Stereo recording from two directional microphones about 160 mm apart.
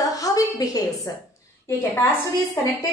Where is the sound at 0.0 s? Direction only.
20° left (ahead or behind).